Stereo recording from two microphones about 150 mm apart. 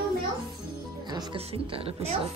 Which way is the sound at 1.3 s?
40° right (ahead or behind).